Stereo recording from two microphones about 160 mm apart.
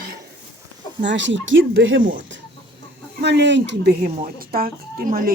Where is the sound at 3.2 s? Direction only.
90° right.